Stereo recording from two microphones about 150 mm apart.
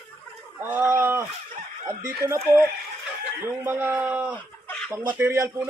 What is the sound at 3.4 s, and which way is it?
Speech, 15° right (ahead or behind).